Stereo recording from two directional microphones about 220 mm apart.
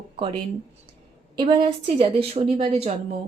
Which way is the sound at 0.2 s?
25° right (ahead or behind).